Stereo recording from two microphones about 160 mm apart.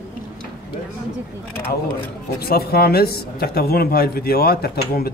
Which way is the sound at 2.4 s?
75° left (ahead or behind).